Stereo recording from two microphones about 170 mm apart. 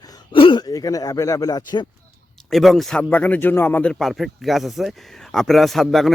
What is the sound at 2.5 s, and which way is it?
Speech, centre (ahead or behind).